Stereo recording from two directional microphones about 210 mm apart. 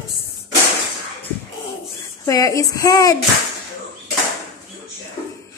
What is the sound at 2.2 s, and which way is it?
Speech, 15° left (ahead or behind).